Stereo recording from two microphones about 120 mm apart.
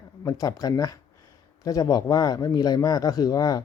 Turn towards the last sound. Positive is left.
turn(degrees=35)  # may be behind; listen again after turning